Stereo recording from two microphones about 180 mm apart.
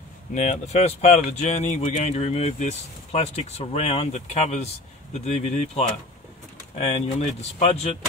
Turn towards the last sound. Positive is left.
turn(degrees=35)  # may be behind; listen again after turning